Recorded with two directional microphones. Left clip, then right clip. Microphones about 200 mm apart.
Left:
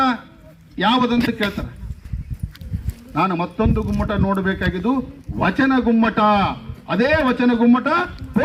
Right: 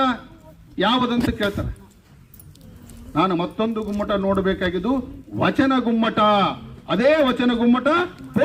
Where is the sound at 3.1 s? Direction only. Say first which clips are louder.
Even; 15° right (ahead or behind).